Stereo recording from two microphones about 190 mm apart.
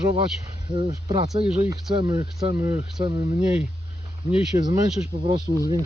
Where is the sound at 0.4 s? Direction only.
20° right (ahead or behind).